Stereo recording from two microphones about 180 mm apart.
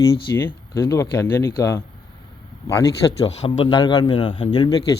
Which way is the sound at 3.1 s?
35° left (ahead or behind).